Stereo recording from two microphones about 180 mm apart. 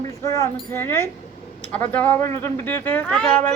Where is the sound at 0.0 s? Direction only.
15° left (ahead or behind).